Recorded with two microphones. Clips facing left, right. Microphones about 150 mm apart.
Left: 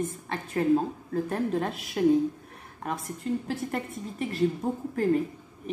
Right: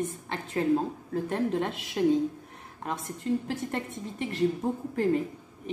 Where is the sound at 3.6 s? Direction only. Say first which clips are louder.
Left 1 dB; 25° right (ahead or behind).